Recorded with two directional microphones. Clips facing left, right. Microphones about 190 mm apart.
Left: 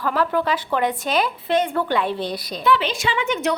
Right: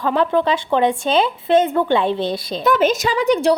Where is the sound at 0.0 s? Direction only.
25° right (ahead or behind).